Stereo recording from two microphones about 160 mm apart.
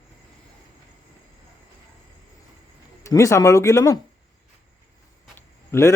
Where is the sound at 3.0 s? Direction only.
20° left (ahead or behind).